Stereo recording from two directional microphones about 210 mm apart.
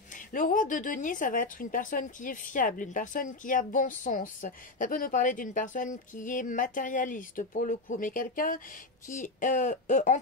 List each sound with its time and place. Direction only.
0.1 s a woman's voice: 40° left (ahead or behind)